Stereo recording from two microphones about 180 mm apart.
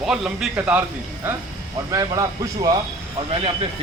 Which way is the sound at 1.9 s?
20° right (ahead or behind).